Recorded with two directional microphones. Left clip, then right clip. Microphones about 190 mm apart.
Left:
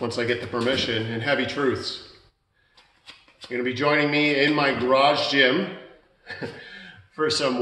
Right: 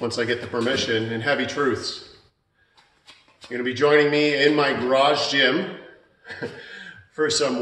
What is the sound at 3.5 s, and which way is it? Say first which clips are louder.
A man's voice: right 4 dB; 5° right (ahead or behind).